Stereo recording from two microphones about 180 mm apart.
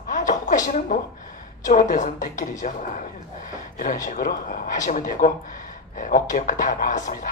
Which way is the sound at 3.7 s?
45° left (ahead or behind).